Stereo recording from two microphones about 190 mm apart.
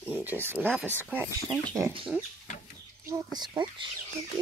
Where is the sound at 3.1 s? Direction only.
20° right (ahead or behind).